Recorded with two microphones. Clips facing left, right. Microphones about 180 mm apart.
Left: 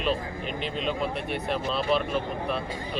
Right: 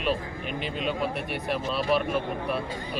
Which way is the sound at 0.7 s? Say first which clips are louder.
Even; 10° right (ahead or behind).